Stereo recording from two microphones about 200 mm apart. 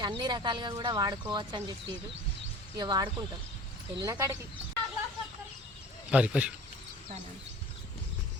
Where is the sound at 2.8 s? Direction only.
20° right (ahead or behind).